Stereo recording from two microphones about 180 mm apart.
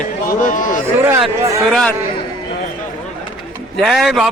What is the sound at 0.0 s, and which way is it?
Speech, 45° left (ahead or behind).